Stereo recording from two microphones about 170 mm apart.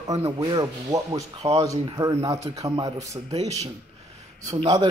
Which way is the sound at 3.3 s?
40° right (ahead or behind).